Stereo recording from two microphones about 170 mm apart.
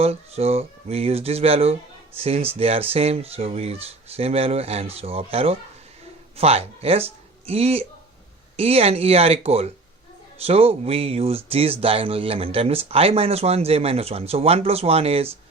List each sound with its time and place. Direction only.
0.0 s speech: 35° right (ahead or behind)